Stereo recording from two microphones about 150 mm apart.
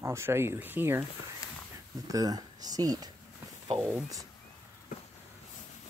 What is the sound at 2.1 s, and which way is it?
Speech, 25° right (ahead or behind).